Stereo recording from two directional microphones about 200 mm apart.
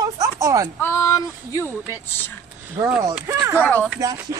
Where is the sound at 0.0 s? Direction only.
15° right (ahead or behind).